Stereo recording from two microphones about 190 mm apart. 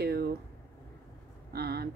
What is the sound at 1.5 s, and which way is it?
Speech, 55° right (ahead or behind).